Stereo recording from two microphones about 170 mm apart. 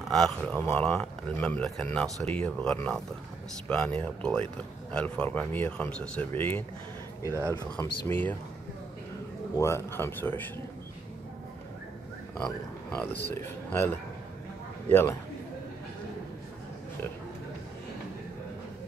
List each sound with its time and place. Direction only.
0.1 s speech: centre (ahead or behind)
7.2 s speech: 15° right (ahead or behind)
8.1 s speech: 10° left (ahead or behind)
9.6 s speech: 15° left (ahead or behind)
12.4 s speech: 5° left (ahead or behind)